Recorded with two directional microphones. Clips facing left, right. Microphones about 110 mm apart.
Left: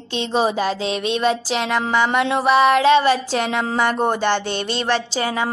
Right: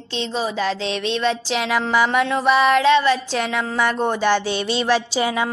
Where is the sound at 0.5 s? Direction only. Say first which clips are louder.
Left 1 dB; 10° left (ahead or behind).